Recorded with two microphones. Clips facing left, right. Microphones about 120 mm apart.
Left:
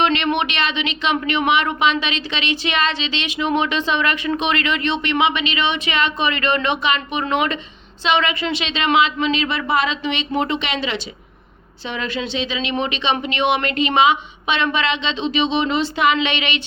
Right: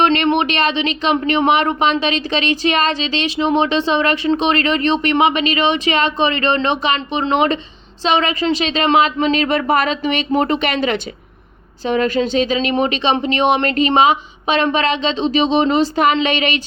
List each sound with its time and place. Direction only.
0.0 s a woman's voice: 40° right (ahead or behind)